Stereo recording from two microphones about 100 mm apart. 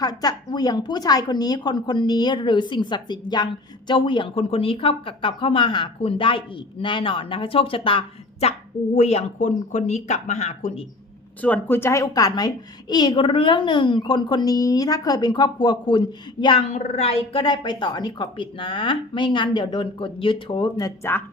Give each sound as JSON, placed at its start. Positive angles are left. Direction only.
{"t": 0.0, "sound": "a woman's voice", "side_deg": 40}
{"t": 9.0, "sound": "speech", "side_deg": 90}
{"t": 11.3, "sound": "a woman's voice", "side_deg": 15}
{"t": 16.6, "sound": "speech", "side_deg": 80}
{"t": 17.4, "sound": "a woman's voice", "side_deg": 50}
{"t": 21.0, "sound": "a woman's voice", "side_deg": 20}